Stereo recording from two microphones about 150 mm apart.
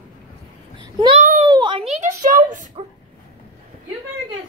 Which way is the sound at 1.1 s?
60° right (ahead or behind).